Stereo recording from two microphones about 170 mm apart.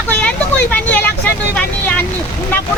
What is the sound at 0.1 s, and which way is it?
Vehicle, 10° left (ahead or behind).